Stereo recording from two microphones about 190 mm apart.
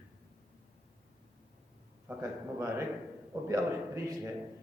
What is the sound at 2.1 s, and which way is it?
Speech, 15° right (ahead or behind).